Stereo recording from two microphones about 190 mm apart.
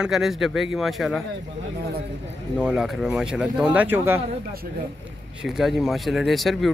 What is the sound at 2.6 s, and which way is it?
Speech, 5° right (ahead or behind).